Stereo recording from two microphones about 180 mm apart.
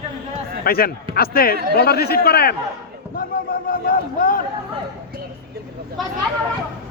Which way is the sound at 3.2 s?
50° left (ahead or behind).